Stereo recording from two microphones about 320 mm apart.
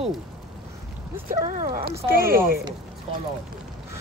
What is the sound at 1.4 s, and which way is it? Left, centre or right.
Speech, right.